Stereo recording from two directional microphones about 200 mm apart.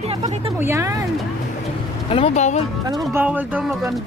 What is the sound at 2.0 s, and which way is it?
Speech, 30° left (ahead or behind).